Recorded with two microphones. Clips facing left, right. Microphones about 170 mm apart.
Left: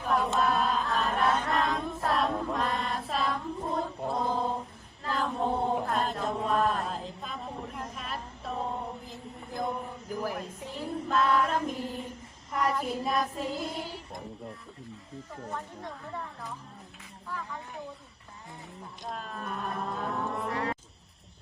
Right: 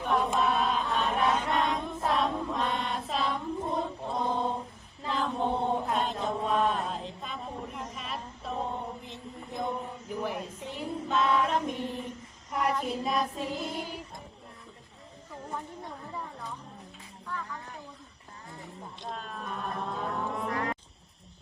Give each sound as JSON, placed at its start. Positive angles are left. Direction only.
{"t": 0.0, "sound": "choir", "side_deg": 0}
{"t": 5.0, "sound": "chant", "side_deg": 0}
{"t": 7.9, "sound": "mantra", "side_deg": 0}
{"t": 10.6, "sound": "child singing", "side_deg": 0}
{"t": 17.2, "sound": "speech", "side_deg": 5}
{"t": 19.1, "sound": "speech", "side_deg": 0}
{"t": 20.5, "sound": "music", "side_deg": 30}